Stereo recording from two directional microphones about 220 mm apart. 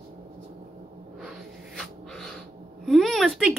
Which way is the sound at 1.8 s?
Centre (ahead or behind).